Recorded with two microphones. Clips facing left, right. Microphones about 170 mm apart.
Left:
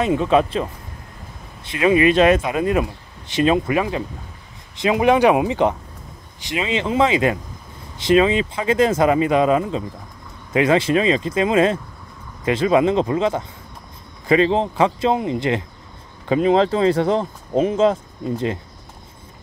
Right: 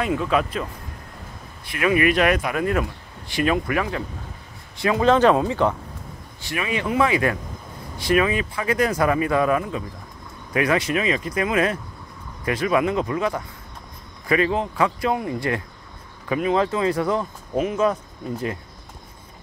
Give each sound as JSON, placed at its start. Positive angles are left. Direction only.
{"t": 0.0, "sound": "speech", "side_deg": 25}